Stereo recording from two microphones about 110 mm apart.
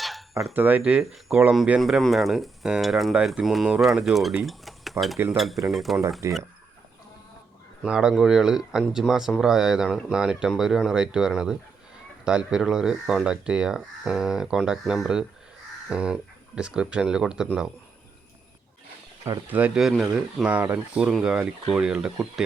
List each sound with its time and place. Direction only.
0.0 s a sound: centre (ahead or behind)
0.5 s speech: 15° right (ahead or behind); by 5.1 s centre (ahead or behind)
5.1 s cutlery: 20° right (ahead or behind)
5.6 s speech: centre (ahead or behind)
6.2 s cutlery: 25° right (ahead or behind)
7.8 s speech: 5° right (ahead or behind)
19.5 s speech: 15° right (ahead or behind)